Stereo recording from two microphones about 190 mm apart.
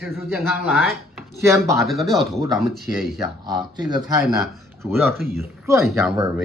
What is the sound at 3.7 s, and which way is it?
Speech, 20° right (ahead or behind).